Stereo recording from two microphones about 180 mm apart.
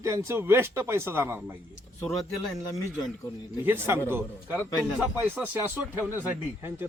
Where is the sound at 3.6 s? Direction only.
10° right (ahead or behind).